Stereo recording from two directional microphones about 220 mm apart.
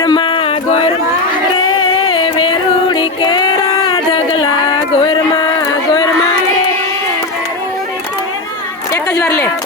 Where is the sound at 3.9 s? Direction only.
25° left (ahead or behind).